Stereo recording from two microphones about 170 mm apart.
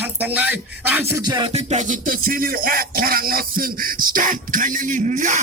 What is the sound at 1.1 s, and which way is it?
Music, 25° right (ahead or behind).